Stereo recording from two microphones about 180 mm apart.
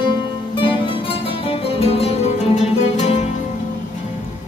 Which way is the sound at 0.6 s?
30° left (ahead or behind).